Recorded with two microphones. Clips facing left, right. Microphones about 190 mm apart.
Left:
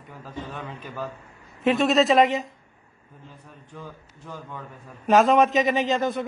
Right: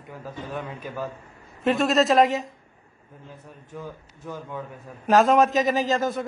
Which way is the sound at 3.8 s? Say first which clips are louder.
Right 4 dB; 15° right (ahead or behind).